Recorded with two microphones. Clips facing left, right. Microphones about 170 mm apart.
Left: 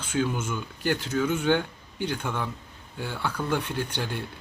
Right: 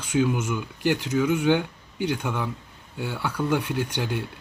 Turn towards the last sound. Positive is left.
turn(degrees=-15)  # may be behind; listen again after turning